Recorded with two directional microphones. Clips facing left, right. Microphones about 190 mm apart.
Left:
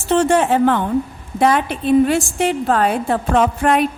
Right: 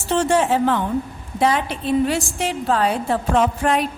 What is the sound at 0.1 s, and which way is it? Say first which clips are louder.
A woman's voice: left 3 dB; 60° left (ahead or behind).